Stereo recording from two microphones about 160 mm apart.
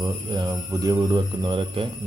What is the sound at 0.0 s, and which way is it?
Speech, 25° right (ahead or behind).